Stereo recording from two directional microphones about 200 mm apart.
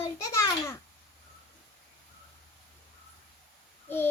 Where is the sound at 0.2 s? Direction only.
15° left (ahead or behind).